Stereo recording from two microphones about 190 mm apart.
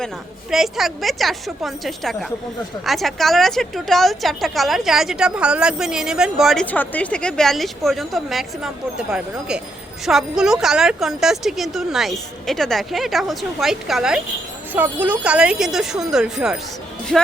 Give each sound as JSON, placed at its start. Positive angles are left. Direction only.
{"t": 0.5, "sound": "a woman's voice", "side_deg": 0}